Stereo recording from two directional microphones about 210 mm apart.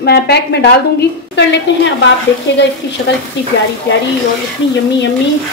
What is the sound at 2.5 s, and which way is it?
Speech, 55° left (ahead or behind).